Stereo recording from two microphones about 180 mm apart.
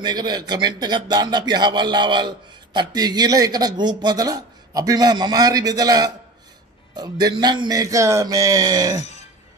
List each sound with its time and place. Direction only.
0.0 s a man's voice: 25° right (ahead or behind)